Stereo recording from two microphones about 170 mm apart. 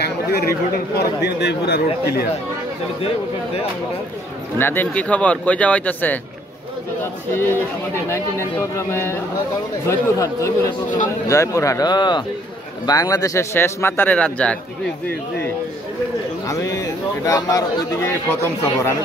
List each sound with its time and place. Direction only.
0.0 s a man's voice: 65° left (ahead or behind)
4.6 s a man's voice: 10° left (ahead or behind)
16.4 s a man's voice: 20° left (ahead or behind)